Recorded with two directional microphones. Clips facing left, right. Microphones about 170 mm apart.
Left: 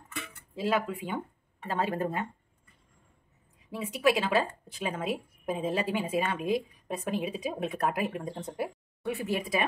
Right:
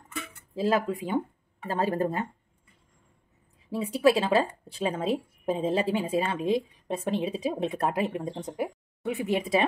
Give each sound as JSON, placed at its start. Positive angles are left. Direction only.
{"t": 0.6, "sound": "speech", "side_deg": -35}
{"t": 3.7, "sound": "a woman's voice", "side_deg": -35}